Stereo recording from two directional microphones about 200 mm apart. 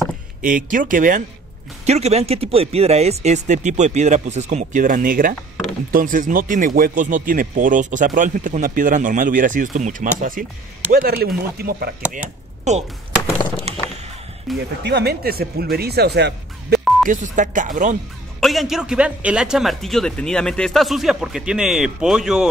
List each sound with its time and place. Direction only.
0.4 s speech: 40° right (ahead or behind)
1.9 s speech: 30° right (ahead or behind); by 12.2 s 50° right (ahead or behind)
13.7 s a sound: 30° right (ahead or behind)
14.5 s a man's voice: centre (ahead or behind)
14.8 s speech: 55° right (ahead or behind)
17.1 s speech: 40° right (ahead or behind)
18.4 s a man's voice: centre (ahead or behind)